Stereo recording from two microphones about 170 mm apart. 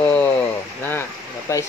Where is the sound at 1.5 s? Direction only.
15° left (ahead or behind).